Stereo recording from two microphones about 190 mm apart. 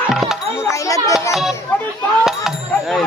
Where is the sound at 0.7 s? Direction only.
15° left (ahead or behind).